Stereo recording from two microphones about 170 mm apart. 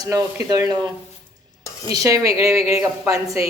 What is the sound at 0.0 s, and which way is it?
Speech, 20° right (ahead or behind).